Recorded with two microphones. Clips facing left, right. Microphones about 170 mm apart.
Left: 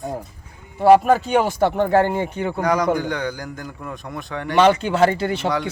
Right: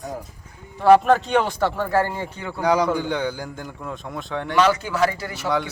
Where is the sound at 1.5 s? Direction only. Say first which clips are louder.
Left 4 dB; 20° left (ahead or behind).